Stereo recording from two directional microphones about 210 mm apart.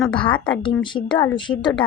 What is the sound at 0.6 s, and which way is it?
Speech, 20° left (ahead or behind).